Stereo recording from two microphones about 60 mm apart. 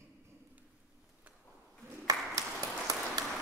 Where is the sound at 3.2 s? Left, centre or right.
Right.